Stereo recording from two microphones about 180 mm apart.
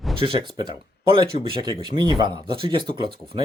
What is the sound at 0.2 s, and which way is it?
Speech, 30° right (ahead or behind).